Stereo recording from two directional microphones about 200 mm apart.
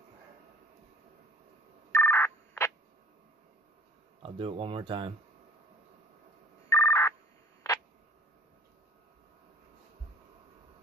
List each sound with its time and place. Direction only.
1.9 s telephone: 10° left (ahead or behind)
4.2 s speech: 25° right (ahead or behind)
6.7 s telephone bell ringing: 15° left (ahead or behind)
7.7 s a sound: 15° left (ahead or behind)